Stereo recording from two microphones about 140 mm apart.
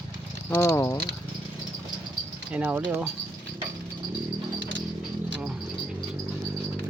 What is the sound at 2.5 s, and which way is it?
Speech, 10° right (ahead or behind).